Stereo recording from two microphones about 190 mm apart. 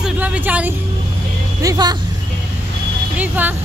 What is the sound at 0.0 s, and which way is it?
Music, 5° right (ahead or behind).